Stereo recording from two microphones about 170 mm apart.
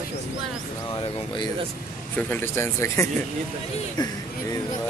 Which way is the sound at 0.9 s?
25° left (ahead or behind).